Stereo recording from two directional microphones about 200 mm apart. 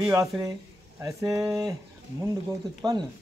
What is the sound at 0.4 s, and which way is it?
Speech, 15° right (ahead or behind).